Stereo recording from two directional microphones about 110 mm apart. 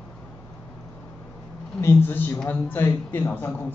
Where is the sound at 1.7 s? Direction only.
20° left (ahead or behind).